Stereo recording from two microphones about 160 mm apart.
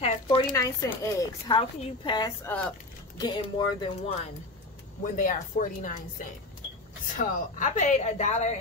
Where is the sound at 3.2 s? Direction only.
30° left (ahead or behind).